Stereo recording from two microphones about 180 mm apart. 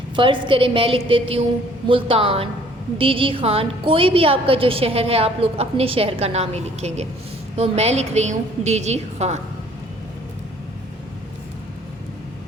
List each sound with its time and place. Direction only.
0.2 s a woman's voice: 30° right (ahead or behind)